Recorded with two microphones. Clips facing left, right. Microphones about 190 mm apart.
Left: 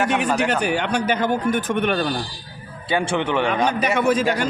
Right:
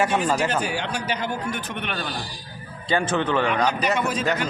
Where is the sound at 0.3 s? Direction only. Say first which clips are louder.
Left 4 dB; 65° left (ahead or behind); by 2.0 s 45° left (ahead or behind).